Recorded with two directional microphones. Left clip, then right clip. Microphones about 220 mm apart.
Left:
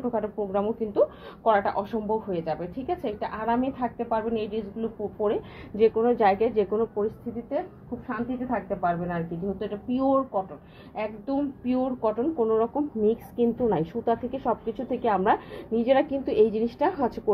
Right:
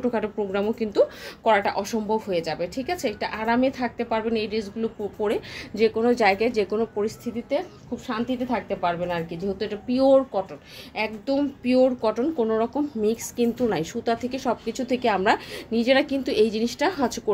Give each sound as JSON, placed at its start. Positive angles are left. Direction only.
{"t": 0.1, "sound": "a woman's voice", "side_deg": -40}
{"t": 5.8, "sound": "a woman's voice", "side_deg": -20}
{"t": 8.1, "sound": "a woman's voice", "side_deg": -40}
{"t": 13.0, "sound": "a woman's voice", "side_deg": -5}